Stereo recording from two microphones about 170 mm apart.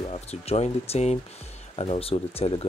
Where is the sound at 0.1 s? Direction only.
35° left (ahead or behind).